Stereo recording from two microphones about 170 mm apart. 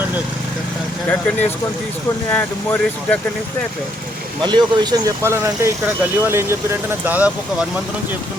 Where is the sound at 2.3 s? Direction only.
10° left (ahead or behind).